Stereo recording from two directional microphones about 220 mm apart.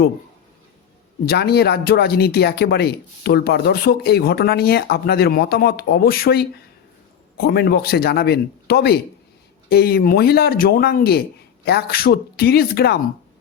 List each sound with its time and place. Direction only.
1.3 s speech: 45° left (ahead or behind)